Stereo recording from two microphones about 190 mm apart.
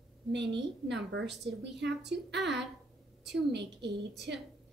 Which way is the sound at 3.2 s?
65° right (ahead or behind).